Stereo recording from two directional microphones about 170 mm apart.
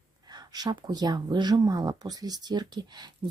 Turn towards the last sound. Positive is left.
turn(degrees=-25)  # may be behind; listen again after turning